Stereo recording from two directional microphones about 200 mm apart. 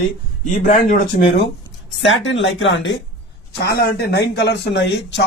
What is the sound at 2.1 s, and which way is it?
Speech, 70° left (ahead or behind).